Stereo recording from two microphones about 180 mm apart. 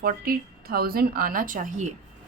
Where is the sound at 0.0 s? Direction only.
55° right (ahead or behind).